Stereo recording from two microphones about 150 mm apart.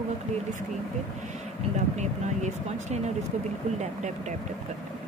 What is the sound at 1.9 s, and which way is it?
Speech, 50° right (ahead or behind).